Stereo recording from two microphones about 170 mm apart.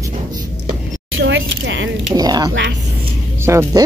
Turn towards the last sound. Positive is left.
turn(degrees=-15)  # may be behind; listen again after turning